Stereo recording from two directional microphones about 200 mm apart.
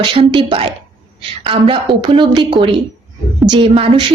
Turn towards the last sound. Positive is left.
turn(degrees=-30)  # may be behind; listen again after turning